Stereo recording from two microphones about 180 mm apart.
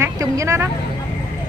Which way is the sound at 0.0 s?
15° right (ahead or behind).